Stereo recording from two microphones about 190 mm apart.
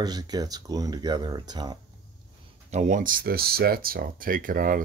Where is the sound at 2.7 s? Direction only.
40° right (ahead or behind).